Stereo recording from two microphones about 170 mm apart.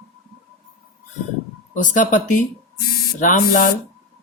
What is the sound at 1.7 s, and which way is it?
Speech, 50° left (ahead or behind).